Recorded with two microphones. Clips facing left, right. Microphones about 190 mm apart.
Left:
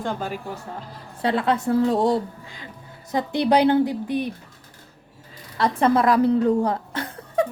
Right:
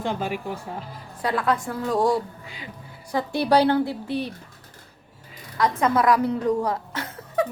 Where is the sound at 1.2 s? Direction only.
25° left (ahead or behind).